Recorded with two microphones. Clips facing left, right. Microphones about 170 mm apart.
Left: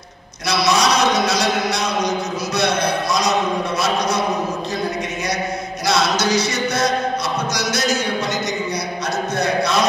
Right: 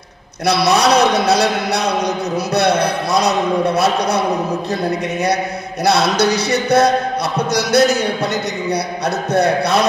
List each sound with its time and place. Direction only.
0.5 s a man's voice: 60° right (ahead or behind)
5.9 s a man's voice: 60° right (ahead or behind)
9.3 s a man's voice: 60° right (ahead or behind)